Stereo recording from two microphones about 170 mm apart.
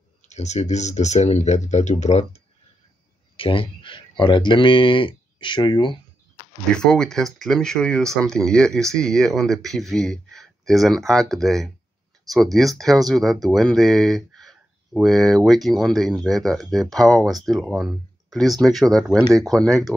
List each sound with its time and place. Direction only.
0.3 s speech: 40° left (ahead or behind)
6.7 s speech: 5° left (ahead or behind)